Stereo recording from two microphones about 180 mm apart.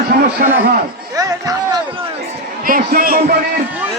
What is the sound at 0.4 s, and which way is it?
Speech, 55° right (ahead or behind).